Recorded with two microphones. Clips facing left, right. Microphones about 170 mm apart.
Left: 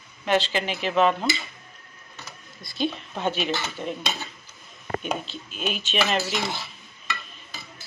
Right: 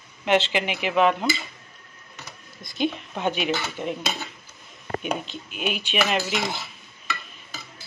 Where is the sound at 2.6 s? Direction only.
20° right (ahead or behind).